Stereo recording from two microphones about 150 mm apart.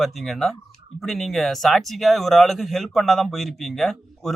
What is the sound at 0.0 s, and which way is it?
Speech, centre (ahead or behind).